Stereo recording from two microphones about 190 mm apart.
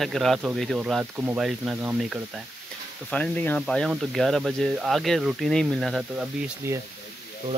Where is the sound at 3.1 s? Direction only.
5° left (ahead or behind).